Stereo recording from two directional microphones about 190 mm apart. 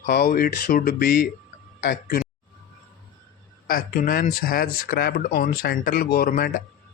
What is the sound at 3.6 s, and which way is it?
Speech, 50° left (ahead or behind).